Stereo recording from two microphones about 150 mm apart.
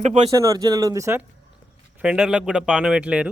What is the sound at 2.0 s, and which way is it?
Speech, 5° right (ahead or behind).